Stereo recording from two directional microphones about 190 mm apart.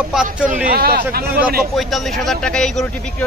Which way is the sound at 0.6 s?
50° right (ahead or behind).